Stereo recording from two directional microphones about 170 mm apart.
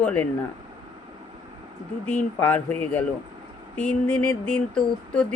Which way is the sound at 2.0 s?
10° left (ahead or behind).